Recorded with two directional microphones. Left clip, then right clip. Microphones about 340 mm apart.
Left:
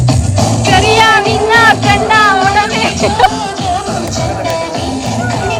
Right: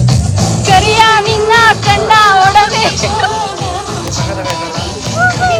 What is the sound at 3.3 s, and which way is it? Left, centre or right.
Music, left.